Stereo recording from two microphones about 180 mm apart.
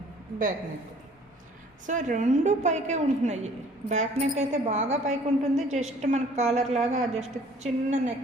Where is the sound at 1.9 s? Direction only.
45° right (ahead or behind).